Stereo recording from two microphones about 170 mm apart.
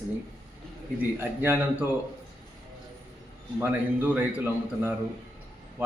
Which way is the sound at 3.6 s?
10° right (ahead or behind).